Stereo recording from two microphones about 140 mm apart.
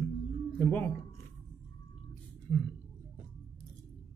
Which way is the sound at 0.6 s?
10° left (ahead or behind).